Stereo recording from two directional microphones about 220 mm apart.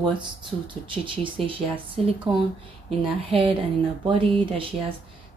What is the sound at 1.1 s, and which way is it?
Speech, 25° right (ahead or behind).